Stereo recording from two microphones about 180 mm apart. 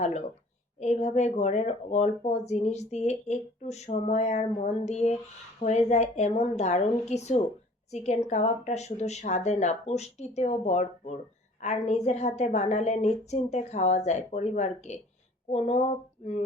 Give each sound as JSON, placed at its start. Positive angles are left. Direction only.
{"t": 0.0, "sound": "speech", "side_deg": 40}